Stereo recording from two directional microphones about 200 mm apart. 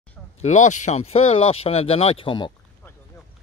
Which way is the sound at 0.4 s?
35° left (ahead or behind).